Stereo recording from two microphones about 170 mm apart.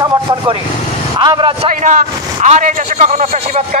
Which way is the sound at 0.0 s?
25° right (ahead or behind).